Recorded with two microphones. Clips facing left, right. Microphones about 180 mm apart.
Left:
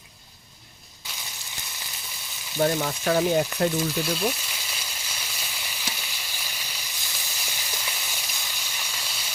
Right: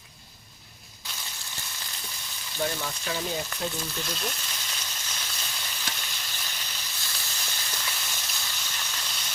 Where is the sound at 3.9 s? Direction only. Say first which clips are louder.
Left 8 dB; 10° left (ahead or behind).